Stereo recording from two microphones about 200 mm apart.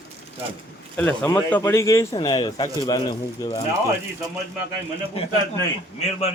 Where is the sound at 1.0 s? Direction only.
5° left (ahead or behind); by 3.6 s 25° left (ahead or behind).